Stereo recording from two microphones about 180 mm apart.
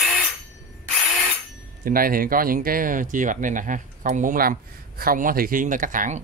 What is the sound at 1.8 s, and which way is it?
Speech, 50° right (ahead or behind).